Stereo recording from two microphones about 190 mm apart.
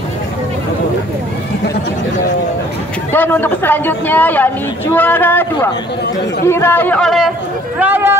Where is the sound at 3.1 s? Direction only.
10° left (ahead or behind).